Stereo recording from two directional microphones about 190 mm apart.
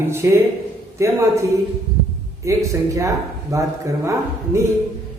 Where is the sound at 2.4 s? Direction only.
15° right (ahead or behind).